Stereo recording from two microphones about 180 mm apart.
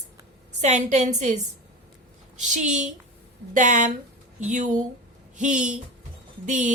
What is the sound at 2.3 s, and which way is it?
A woman's voice, 40° right (ahead or behind).